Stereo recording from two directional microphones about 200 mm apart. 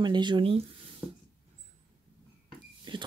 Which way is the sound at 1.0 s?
10° right (ahead or behind).